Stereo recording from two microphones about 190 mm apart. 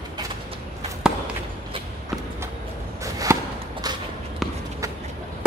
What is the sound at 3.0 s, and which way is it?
Chop, 15° right (ahead or behind).